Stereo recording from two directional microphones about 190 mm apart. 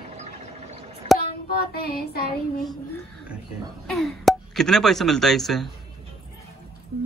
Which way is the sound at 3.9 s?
Centre (ahead or behind).